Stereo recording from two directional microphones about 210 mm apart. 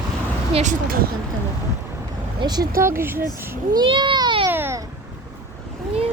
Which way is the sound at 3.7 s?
20° right (ahead or behind).